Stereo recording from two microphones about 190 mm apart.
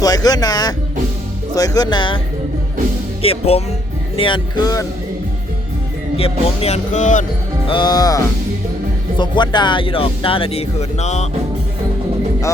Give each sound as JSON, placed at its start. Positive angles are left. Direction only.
{"t": 0.0, "sound": "music", "side_deg": 20}
{"t": 1.5, "sound": "speech", "side_deg": 20}
{"t": 3.2, "sound": "music", "side_deg": 30}
{"t": 4.2, "sound": "speech", "side_deg": 25}
{"t": 6.1, "sound": "speech", "side_deg": 30}
{"t": 7.7, "sound": "speech", "side_deg": 20}